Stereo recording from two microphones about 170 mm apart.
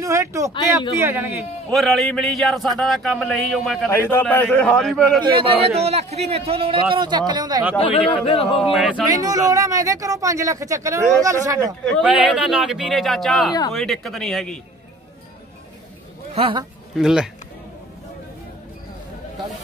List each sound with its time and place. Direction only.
0.0 s speech: 15° right (ahead or behind)
1.7 s speech: centre (ahead or behind)
3.9 s a man's voice: 15° left (ahead or behind)
5.2 s a man's voice: 30° right (ahead or behind)
7.8 s a man's voice: 35° left (ahead or behind)
8.7 s speech: centre (ahead or behind)
9.1 s speech: 20° right (ahead or behind)
11.8 s speech: centre (ahead or behind)
13.5 s speech: 20° left (ahead or behind)
13.7 s speech: centre (ahead or behind)
16.3 s a man's voice: 35° right (ahead or behind)
16.9 s speech: 5° right (ahead or behind)